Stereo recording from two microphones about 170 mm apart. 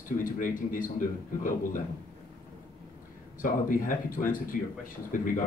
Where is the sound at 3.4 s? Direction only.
55° left (ahead or behind).